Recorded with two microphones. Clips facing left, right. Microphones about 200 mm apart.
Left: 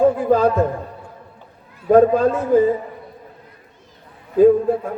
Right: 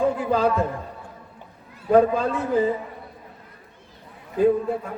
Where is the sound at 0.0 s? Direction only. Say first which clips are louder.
Left 6 dB; 45° left (ahead or behind).